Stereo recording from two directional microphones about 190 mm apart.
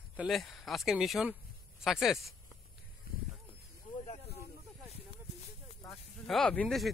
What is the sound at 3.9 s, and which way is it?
Snake, 40° left (ahead or behind).